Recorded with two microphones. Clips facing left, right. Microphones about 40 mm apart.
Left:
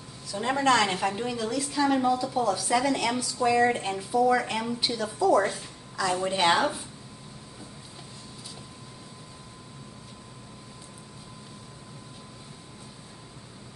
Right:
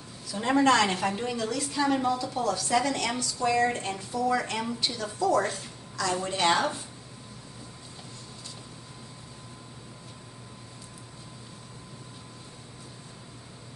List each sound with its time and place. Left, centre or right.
0.3 s a woman's voice: centre